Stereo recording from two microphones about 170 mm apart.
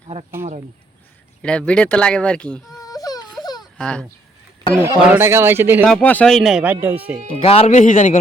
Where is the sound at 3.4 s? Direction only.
25° left (ahead or behind).